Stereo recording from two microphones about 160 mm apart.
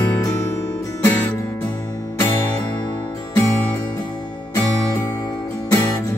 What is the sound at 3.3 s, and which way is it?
Music, 15° left (ahead or behind).